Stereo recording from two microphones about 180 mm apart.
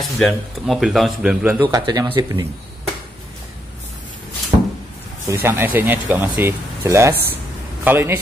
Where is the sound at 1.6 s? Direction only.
20° right (ahead or behind).